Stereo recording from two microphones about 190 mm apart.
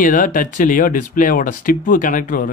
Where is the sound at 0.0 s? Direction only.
45° left (ahead or behind).